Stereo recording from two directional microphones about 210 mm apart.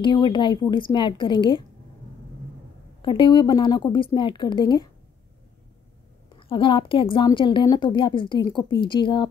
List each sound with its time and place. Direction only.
0.0 s a woman's voice: 20° left (ahead or behind)
3.0 s a woman's voice: 25° left (ahead or behind)
6.5 s a woman's voice: 25° left (ahead or behind)